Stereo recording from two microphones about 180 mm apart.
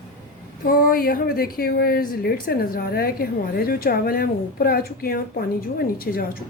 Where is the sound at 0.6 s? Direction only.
55° left (ahead or behind).